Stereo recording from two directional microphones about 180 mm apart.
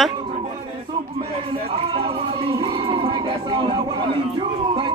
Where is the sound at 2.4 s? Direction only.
30° right (ahead or behind).